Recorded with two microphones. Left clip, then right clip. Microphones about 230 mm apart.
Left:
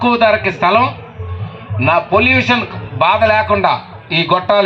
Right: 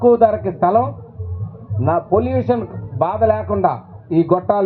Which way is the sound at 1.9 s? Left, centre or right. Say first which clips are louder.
Left 5 dB; right.